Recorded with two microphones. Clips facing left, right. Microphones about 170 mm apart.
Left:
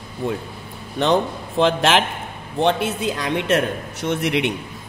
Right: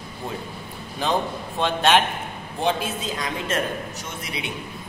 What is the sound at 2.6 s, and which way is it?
A man's voice, 70° left (ahead or behind).